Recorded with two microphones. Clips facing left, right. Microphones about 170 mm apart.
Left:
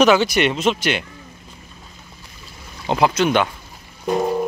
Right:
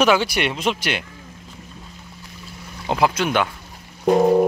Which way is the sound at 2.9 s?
10° right (ahead or behind).